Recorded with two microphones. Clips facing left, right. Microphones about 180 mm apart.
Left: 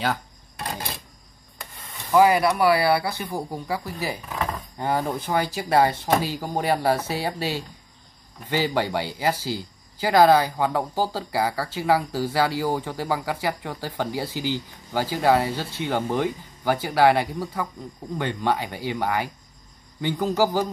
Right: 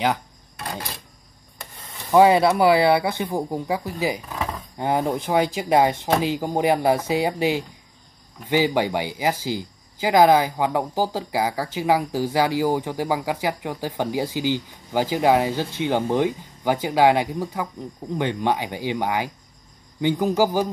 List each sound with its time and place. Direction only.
2.0 s speech: 25° right (ahead or behind)